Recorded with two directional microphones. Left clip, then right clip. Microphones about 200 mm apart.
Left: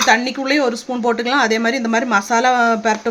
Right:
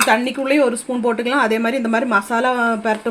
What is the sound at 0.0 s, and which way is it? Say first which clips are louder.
Speech: left 1 dB; 15° left (ahead or behind).